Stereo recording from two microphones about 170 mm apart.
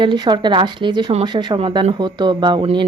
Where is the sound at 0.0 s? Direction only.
25° right (ahead or behind).